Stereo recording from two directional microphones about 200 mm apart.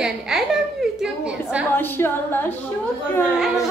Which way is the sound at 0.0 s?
Centre (ahead or behind).